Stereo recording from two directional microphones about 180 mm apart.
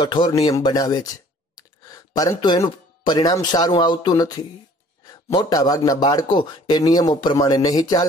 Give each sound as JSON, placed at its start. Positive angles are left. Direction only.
{"t": 0.0, "sound": "a man's voice", "side_deg": 25}